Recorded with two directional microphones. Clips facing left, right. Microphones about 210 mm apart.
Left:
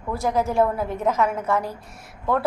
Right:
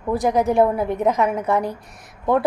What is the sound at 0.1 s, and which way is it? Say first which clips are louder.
A woman's voice: right 4 dB; 15° right (ahead or behind).